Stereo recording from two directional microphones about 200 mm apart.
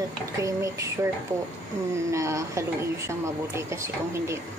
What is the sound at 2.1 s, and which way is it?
Speech, 15° right (ahead or behind).